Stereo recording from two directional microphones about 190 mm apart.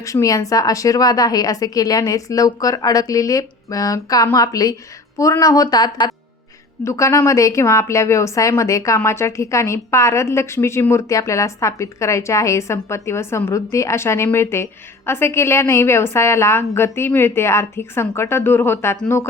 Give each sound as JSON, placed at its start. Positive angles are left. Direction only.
{"t": 0.0, "sound": "a woman's voice", "side_deg": 15}